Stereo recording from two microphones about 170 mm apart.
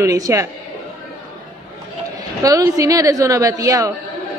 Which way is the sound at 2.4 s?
20° right (ahead or behind).